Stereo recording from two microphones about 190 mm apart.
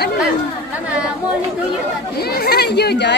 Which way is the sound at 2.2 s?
55° left (ahead or behind).